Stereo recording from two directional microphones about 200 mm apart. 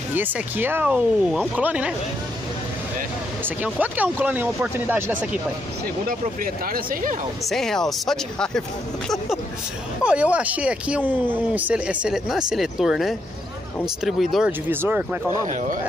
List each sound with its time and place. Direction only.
0.1 s speech: 10° right (ahead or behind)
3.4 s speech: 10° right (ahead or behind)
6.0 s speech: 45° right (ahead or behind)
7.4 s speech: centre (ahead or behind)
10.0 s speech: 5° right (ahead or behind)
15.4 s speech: 40° right (ahead or behind)